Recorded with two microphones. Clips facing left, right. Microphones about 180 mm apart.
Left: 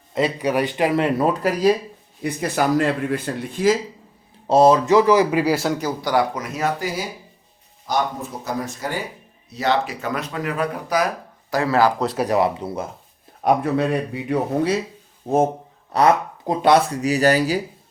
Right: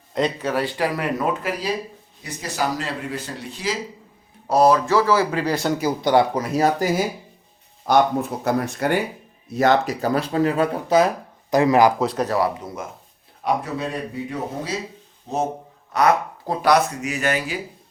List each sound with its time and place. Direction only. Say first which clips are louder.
0.1 s speech: left 2 dB; 5° left (ahead or behind); by 1.7 s 40° left (ahead or behind)
2.2 s speech: left 5 dB; 55° left (ahead or behind)
4.4 s speech: left 3 dB; 25° left (ahead or behind); by 5.8 s centre (ahead or behind)
6.0 s speech: right 5 dB; 25° right (ahead or behind); by 7.0 s 45° right (ahead or behind)
8.4 s speech: right 5 dB; 60° right (ahead or behind)
9.5 s speech: right 3 dB; 50° right (ahead or behind); by 11.9 s 15° right (ahead or behind)
11.9 s speech: even; centre (ahead or behind)
12.2 s speech: left 3 dB; 15° left (ahead or behind)
12.5 s speech: left 5 dB; 30° left (ahead or behind)
13.4 s speech: left 5 dB; 60° left (ahead or behind)
15.3 s speech: left 7 dB; 50° left (ahead or behind)
15.9 s speech: left 2 dB; 30° left (ahead or behind)